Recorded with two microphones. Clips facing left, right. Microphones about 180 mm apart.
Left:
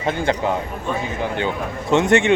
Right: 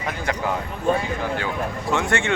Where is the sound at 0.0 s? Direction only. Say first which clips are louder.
Left 5 dB; 25° left (ahead or behind).